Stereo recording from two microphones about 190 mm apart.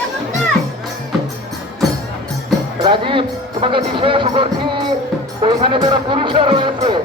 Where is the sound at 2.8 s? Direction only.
25° right (ahead or behind).